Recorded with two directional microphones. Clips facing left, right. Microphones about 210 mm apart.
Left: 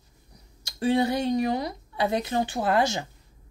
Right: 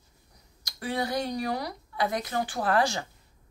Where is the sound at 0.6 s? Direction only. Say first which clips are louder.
Left 8 dB; 25° left (ahead or behind).